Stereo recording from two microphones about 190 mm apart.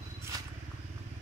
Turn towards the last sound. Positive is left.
turn(degrees=-20)  # may be behind; listen again after turning